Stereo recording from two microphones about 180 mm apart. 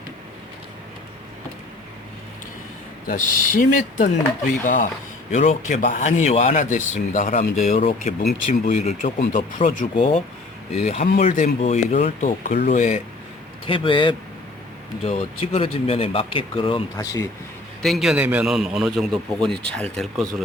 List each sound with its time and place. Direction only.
3.1 s speech: 50° left (ahead or behind)
13.7 s a man's voice: 30° left (ahead or behind)
17.8 s a man's voice: centre (ahead or behind)